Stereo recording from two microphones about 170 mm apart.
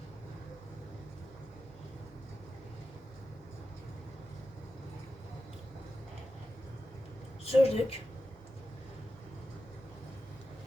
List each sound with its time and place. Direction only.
7.4 s a woman's voice: 35° left (ahead or behind)